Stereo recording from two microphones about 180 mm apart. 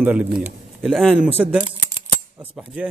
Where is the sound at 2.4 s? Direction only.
5° right (ahead or behind).